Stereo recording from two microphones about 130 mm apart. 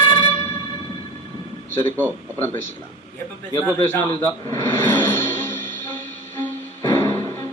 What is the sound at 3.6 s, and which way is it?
Speech, 15° left (ahead or behind).